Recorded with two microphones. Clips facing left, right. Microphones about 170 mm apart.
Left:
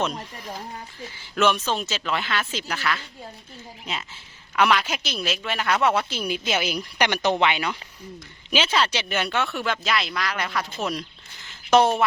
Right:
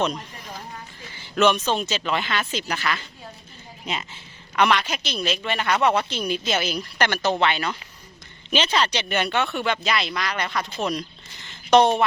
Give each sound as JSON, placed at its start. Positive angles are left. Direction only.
{"t": 1.4, "sound": "a woman's voice", "side_deg": 5}